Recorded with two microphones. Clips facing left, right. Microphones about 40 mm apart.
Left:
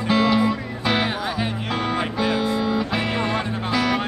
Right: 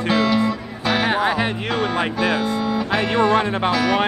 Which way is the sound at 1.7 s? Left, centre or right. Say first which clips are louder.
Right 3 dB; centre.